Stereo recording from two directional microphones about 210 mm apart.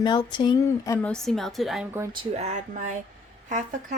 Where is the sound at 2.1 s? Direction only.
25° right (ahead or behind).